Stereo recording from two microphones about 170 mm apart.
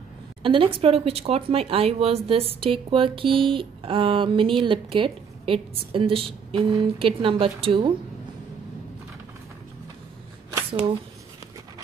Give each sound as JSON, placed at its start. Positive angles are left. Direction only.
{"t": 0.4, "sound": "speech", "side_deg": -30}